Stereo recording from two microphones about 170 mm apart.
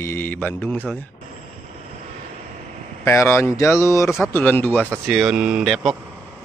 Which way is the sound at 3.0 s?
15° left (ahead or behind).